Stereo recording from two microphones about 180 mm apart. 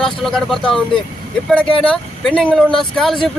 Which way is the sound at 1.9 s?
5° left (ahead or behind).